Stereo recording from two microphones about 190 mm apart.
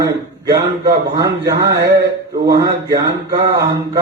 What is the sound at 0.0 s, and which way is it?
A man's voice, 20° right (ahead or behind).